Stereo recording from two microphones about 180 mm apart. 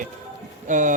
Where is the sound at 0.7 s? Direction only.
45° right (ahead or behind).